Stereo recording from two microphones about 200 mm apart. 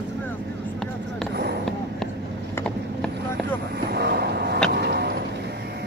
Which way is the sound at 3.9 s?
55° right (ahead or behind).